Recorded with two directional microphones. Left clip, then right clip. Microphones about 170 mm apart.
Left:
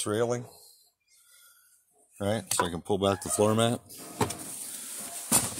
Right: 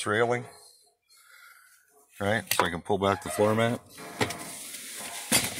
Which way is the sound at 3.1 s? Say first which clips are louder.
Right 1 dB; 35° left (ahead or behind).